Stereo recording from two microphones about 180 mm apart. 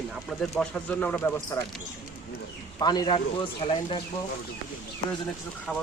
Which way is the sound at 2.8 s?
20° left (ahead or behind).